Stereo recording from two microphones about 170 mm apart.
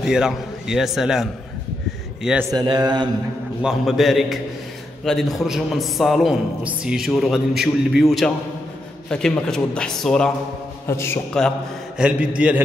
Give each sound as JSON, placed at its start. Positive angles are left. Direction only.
{"t": 0.0, "sound": "a man's voice", "side_deg": -5}
{"t": 2.5, "sound": "mantra", "side_deg": -25}
{"t": 3.6, "sound": "a man's voice", "side_deg": 0}
{"t": 10.9, "sound": "a man's voice", "side_deg": 15}
{"t": 11.4, "sound": "a man's voice", "side_deg": 5}
{"t": 12.0, "sound": "mantra", "side_deg": -5}